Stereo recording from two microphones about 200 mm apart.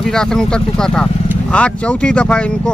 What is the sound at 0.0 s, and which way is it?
Speech, 5° left (ahead or behind).